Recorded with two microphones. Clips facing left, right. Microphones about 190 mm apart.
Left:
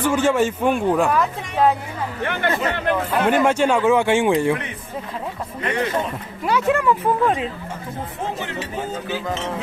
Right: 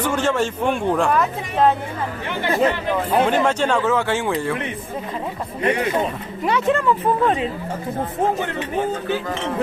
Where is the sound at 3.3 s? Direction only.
10° left (ahead or behind).